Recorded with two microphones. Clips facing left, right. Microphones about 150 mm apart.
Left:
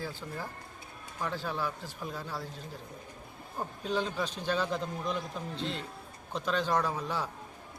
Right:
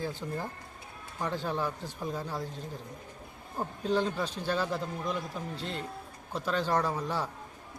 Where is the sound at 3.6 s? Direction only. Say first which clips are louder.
Right 3 dB; 15° right (ahead or behind).